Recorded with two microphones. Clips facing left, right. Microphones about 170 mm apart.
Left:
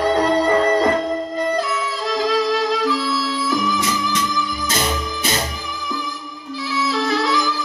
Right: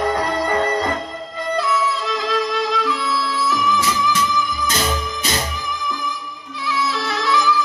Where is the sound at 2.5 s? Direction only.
40° left (ahead or behind).